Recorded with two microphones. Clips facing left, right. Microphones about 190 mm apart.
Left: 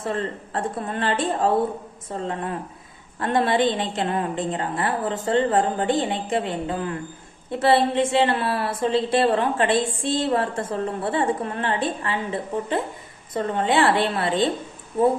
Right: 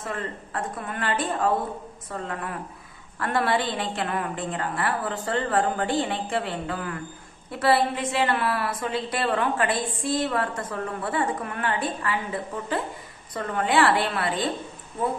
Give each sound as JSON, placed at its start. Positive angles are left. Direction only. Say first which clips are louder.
{"t": 0.0, "sound": "a woman's voice", "louder": "left 5 dB", "side_deg": 30}